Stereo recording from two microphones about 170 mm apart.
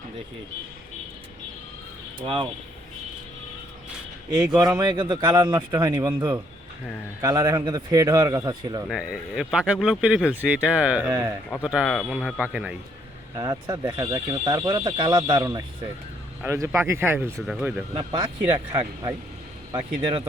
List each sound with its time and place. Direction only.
2.1 s speech: 30° right (ahead or behind)
4.3 s speech: 20° right (ahead or behind)
8.9 s speech: 5° right (ahead or behind)
13.3 s speech: 20° right (ahead or behind)
17.4 s speech: 5° right (ahead or behind)
17.9 s speech: 25° right (ahead or behind)